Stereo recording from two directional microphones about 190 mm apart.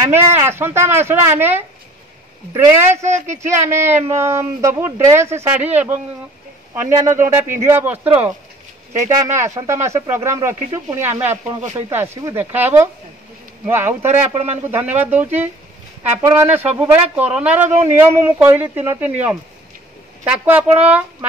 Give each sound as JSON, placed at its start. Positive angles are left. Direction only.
{"t": 0.1, "sound": "speech", "side_deg": -10}
{"t": 2.5, "sound": "speech", "side_deg": -15}
{"t": 7.1, "sound": "speech", "side_deg": -10}
{"t": 9.3, "sound": "speech", "side_deg": -15}
{"t": 14.0, "sound": "speech", "side_deg": -35}
{"t": 15.0, "sound": "speech", "side_deg": -10}